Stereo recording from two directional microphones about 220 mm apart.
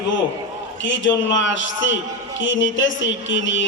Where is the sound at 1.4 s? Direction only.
60° left (ahead or behind).